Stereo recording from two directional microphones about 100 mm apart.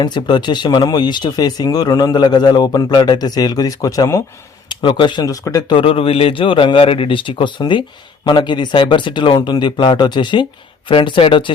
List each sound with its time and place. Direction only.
0.0 s a man's voice: 50° left (ahead or behind)
4.7 s speech: 55° left (ahead or behind)
5.2 s speech: 35° left (ahead or behind)
5.7 s a man's voice: 65° left (ahead or behind)